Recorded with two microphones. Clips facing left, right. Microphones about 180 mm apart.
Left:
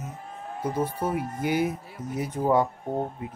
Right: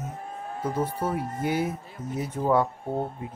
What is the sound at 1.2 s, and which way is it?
Speech, centre (ahead or behind).